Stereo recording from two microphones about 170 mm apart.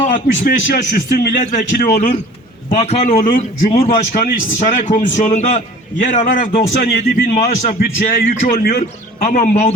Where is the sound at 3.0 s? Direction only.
55° left (ahead or behind).